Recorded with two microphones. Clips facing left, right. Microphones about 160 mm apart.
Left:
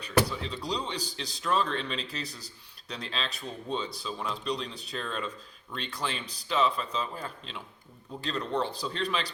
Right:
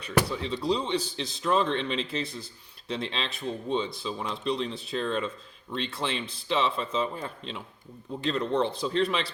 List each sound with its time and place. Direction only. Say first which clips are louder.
0.3 s speech: right 6 dB; 25° right (ahead or behind)